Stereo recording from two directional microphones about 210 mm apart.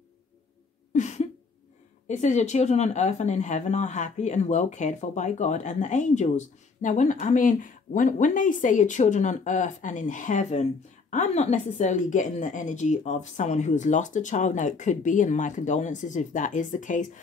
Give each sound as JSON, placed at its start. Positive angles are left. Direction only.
{"t": 0.9, "sound": "cough", "side_deg": 35}
{"t": 2.0, "sound": "speech", "side_deg": 35}